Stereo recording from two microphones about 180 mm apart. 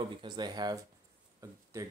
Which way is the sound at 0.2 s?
25° right (ahead or behind).